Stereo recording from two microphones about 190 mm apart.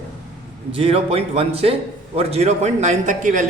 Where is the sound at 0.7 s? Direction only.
30° right (ahead or behind).